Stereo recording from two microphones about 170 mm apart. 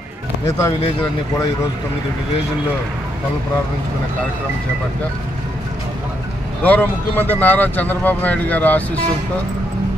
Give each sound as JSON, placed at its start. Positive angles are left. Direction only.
{"t": 0.5, "sound": "speech", "side_deg": 20}
{"t": 6.6, "sound": "speech", "side_deg": 10}